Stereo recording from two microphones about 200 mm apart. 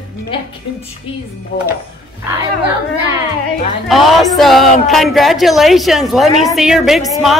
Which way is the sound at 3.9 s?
Centre (ahead or behind).